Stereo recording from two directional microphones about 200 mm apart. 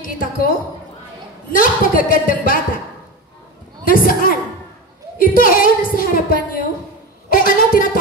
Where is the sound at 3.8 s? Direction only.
45° left (ahead or behind).